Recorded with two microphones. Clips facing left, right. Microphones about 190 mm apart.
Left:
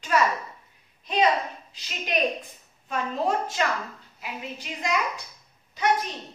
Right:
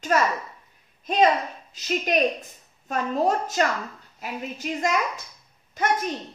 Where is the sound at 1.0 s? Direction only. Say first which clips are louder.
Right 3 dB; 45° right (ahead or behind).